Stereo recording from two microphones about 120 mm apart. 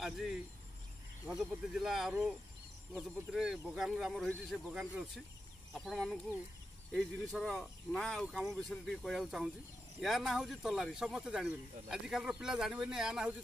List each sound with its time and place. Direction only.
0.0 s speech: 5° right (ahead or behind)